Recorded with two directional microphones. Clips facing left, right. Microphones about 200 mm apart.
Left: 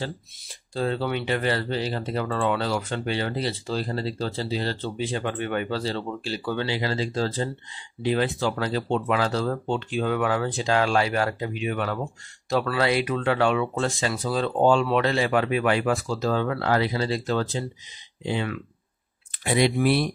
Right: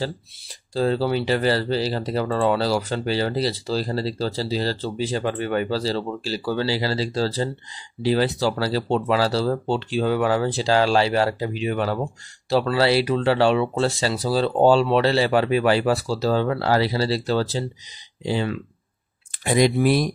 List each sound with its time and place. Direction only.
0.7 s speech: 35° right (ahead or behind)